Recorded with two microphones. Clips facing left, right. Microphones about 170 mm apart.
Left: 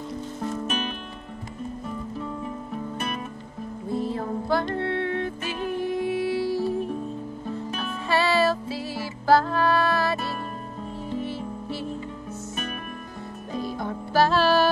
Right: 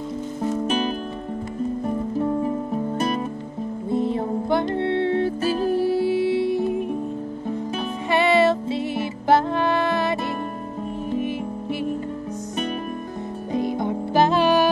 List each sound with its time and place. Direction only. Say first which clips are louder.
0.7 s music: right 7 dB; 35° right (ahead or behind)
2.1 s music: right 10 dB; 40° right (ahead or behind)
3.9 s music: right 5 dB; 20° right (ahead or behind)
13.5 s music: right 6 dB; 20° right (ahead or behind)